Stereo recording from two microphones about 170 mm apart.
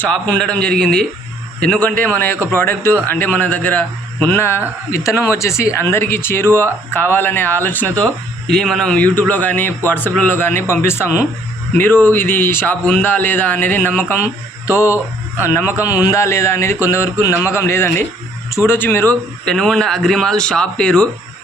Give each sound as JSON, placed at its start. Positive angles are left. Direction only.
{"t": 0.0, "sound": "a man's voice", "side_deg": 5}
{"t": 16.0, "sound": "a man's voice", "side_deg": 15}